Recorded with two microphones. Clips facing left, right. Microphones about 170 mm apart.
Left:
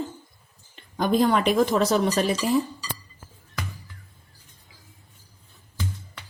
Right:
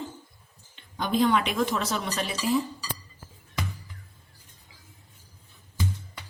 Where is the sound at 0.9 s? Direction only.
45° left (ahead or behind).